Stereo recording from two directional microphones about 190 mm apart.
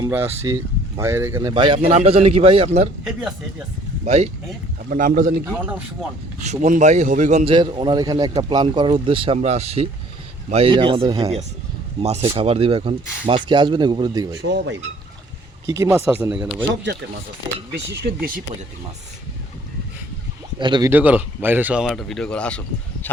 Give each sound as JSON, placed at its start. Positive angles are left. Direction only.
{"t": 0.0, "sound": "a man's voice", "side_deg": -10}
{"t": 3.0, "sound": "speech", "side_deg": -5}
{"t": 4.0, "sound": "speech", "side_deg": -35}
{"t": 4.9, "sound": "speech", "side_deg": -50}
{"t": 5.5, "sound": "speech", "side_deg": -10}
{"t": 6.4, "sound": "a man's voice", "side_deg": -40}
{"t": 15.6, "sound": "speech", "side_deg": -15}
{"t": 17.7, "sound": "speech", "side_deg": -60}
{"t": 20.6, "sound": "a man's voice", "side_deg": -25}
{"t": 20.9, "sound": "speech", "side_deg": -10}